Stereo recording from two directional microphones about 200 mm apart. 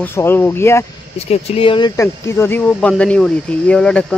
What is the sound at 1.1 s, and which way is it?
Speech, 30° left (ahead or behind).